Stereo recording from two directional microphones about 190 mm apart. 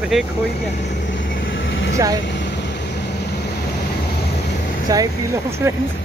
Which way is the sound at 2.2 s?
70° left (ahead or behind).